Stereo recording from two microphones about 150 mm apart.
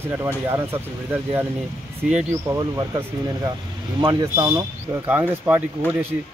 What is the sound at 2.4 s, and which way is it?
Speech, 20° right (ahead or behind).